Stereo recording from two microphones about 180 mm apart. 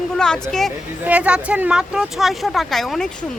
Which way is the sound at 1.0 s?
5° right (ahead or behind).